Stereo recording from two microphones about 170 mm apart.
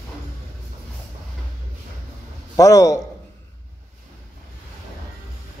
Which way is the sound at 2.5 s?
20° left (ahead or behind).